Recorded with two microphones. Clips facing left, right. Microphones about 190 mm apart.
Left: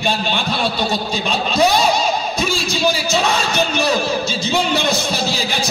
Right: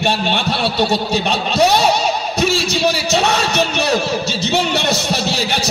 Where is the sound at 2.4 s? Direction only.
65° right (ahead or behind).